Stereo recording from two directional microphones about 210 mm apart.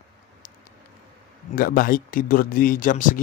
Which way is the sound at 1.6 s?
40° left (ahead or behind).